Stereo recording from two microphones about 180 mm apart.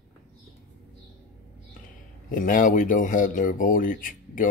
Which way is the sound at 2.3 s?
50° left (ahead or behind).